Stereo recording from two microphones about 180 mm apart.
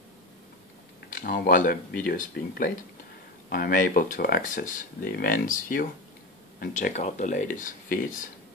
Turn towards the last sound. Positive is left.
turn(degrees=45)  # may be behind; listen again after turning